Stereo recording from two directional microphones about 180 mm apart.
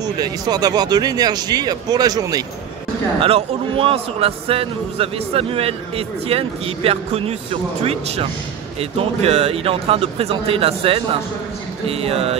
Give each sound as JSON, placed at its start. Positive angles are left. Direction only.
{"t": 0.0, "sound": "speech", "side_deg": -20}
{"t": 3.2, "sound": "a man's voice", "side_deg": -30}